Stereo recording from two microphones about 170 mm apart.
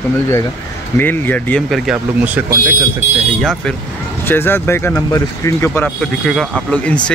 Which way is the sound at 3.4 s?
5° left (ahead or behind).